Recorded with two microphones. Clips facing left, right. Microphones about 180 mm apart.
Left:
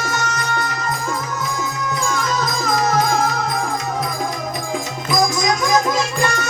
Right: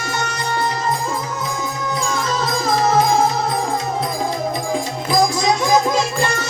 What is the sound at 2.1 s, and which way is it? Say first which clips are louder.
Music: right 1 dB; 30° right (ahead or behind).